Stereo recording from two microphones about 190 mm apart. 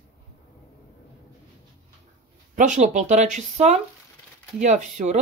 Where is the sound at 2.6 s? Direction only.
40° right (ahead or behind).